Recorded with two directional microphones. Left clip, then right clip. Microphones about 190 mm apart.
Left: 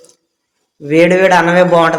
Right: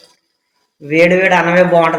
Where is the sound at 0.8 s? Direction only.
25° left (ahead or behind).